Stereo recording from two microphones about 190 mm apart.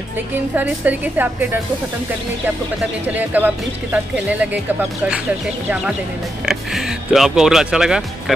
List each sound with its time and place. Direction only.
0.6 s speech: 10° right (ahead or behind)
3.1 s speech: 10° right (ahead or behind)
6.4 s speech: centre (ahead or behind)